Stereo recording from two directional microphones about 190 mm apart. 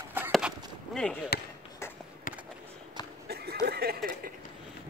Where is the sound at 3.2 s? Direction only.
55° right (ahead or behind).